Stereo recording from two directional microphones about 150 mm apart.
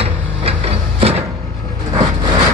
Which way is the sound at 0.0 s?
40° right (ahead or behind).